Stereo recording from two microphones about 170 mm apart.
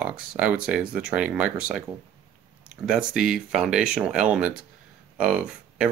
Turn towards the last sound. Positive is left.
turn(degrees=-5)  # may be behind; listen again after turning